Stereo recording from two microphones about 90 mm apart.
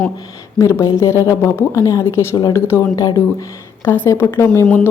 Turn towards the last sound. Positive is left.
turn(degrees=30)  # may be behind; listen again after turning